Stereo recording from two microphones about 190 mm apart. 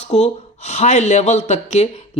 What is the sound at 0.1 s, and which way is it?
Speech, 35° left (ahead or behind).